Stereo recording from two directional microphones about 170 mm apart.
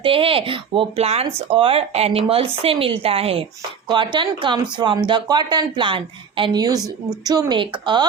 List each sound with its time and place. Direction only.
0.0 s speech: 30° right (ahead or behind)